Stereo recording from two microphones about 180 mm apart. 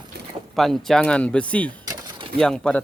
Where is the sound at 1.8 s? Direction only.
20° right (ahead or behind).